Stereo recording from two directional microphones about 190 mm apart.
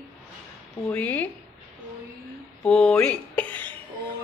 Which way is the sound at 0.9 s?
10° left (ahead or behind).